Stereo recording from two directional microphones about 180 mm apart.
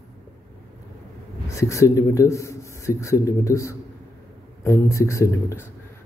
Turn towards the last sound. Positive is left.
turn(degrees=15)  # may be behind; listen again after turning